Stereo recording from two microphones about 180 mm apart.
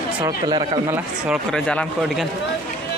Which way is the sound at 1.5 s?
5° left (ahead or behind).